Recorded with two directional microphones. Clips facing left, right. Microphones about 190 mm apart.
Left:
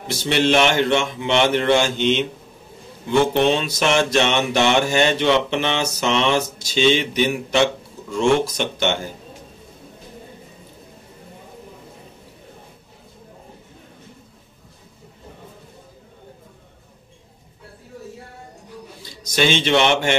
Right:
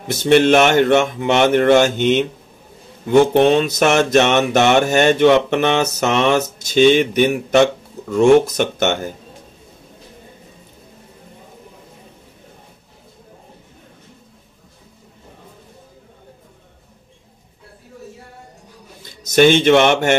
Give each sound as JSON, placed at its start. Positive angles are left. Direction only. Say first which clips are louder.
{"t": 0.1, "sound": "mantra", "louder": "right 6 dB", "side_deg": -50}
{"t": 19.0, "sound": "a man's voice", "louder": "right 8 dB", "side_deg": -50}